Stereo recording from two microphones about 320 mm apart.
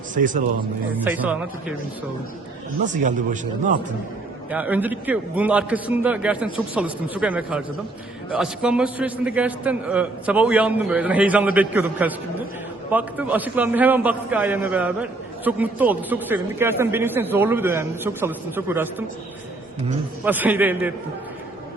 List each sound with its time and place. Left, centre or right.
0.1 s a man's voice: right
1.0 s a man's voice: centre
2.9 s a man's voice: right
4.5 s a man's voice: centre
20.2 s a man's voice: centre